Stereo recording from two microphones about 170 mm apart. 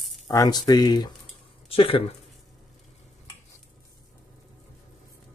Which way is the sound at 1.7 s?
35° left (ahead or behind).